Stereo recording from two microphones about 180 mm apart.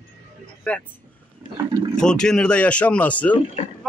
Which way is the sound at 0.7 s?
10° left (ahead or behind).